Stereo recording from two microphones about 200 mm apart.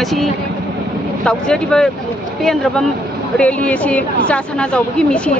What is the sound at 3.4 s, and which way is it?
A woman's voice, 5° left (ahead or behind).